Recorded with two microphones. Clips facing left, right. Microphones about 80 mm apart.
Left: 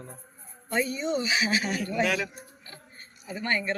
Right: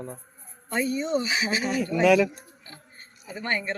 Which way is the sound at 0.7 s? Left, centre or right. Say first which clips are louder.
Right 2 dB; right.